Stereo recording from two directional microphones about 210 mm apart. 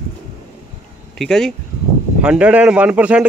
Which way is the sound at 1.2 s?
Centre (ahead or behind).